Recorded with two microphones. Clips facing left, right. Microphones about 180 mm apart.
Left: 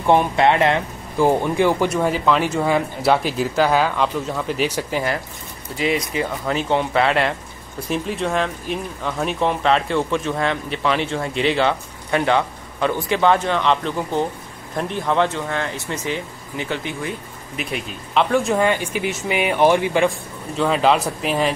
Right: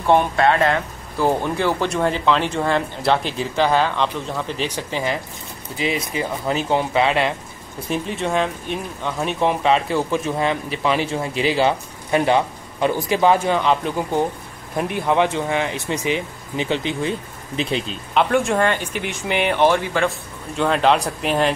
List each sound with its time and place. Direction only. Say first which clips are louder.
0.0 s speech: left 1 dB; 20° left (ahead or behind)
6.5 s speech: even; 5° right (ahead or behind); by 17.9 s 25° right (ahead or behind)
18.1 s speech: even; centre (ahead or behind); by 20.1 s 15° left (ahead or behind)
20.5 s speech: even; centre (ahead or behind)